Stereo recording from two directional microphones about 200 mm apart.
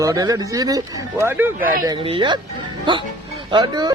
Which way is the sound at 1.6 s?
45° right (ahead or behind).